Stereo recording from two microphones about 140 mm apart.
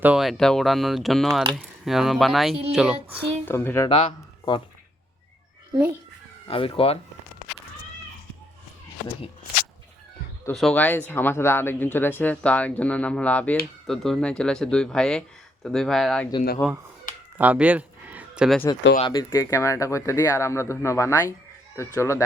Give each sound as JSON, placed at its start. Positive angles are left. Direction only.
{"t": 0.0, "sound": "speech", "side_deg": -5}
{"t": 3.4, "sound": "speech", "side_deg": 15}
{"t": 3.8, "sound": "speech", "side_deg": 35}
{"t": 6.5, "sound": "speech", "side_deg": 40}
{"t": 10.5, "sound": "speech", "side_deg": 0}
{"t": 10.8, "sound": "speech", "side_deg": 15}
{"t": 17.3, "sound": "a sound", "side_deg": -10}
{"t": 18.9, "sound": "speech", "side_deg": 30}